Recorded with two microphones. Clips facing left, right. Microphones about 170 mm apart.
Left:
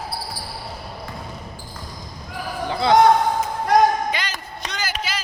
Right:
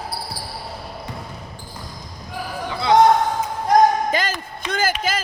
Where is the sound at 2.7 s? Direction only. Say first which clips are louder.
Left 1 dB; 35° left (ahead or behind).